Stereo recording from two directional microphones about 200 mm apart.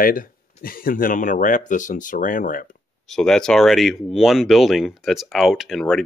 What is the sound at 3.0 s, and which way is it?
Speech, centre (ahead or behind).